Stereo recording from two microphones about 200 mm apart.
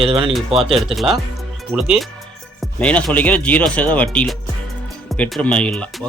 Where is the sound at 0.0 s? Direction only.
30° right (ahead or behind).